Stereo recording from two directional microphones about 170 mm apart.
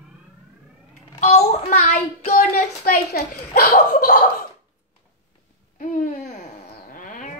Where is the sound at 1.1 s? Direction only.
45° left (ahead or behind); by 4.1 s 65° left (ahead or behind).